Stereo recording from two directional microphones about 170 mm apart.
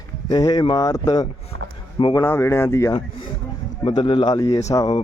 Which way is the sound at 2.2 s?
15° left (ahead or behind).